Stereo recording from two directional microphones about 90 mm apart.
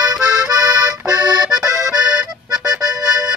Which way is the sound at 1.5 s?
10° right (ahead or behind).